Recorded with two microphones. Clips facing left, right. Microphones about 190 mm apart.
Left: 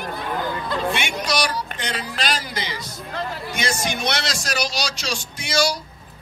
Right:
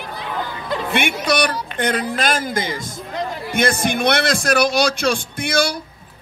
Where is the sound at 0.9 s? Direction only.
55° right (ahead or behind).